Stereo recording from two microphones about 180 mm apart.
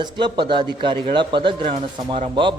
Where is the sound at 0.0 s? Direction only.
25° right (ahead or behind).